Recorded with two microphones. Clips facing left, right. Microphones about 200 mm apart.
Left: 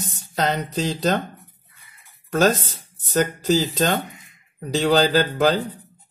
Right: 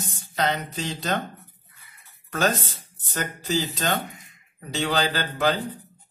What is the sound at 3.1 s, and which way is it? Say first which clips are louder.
Speech: left 8 dB; 40° left (ahead or behind).